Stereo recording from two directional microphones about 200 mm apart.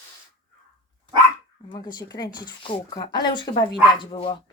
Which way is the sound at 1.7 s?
20° left (ahead or behind).